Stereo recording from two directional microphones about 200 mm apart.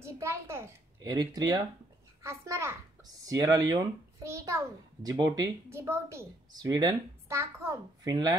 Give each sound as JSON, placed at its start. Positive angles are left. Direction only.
{"t": 0.0, "sound": "a child's voice", "side_deg": -15}